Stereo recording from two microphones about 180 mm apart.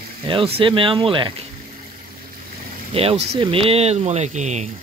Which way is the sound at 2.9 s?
35° right (ahead or behind).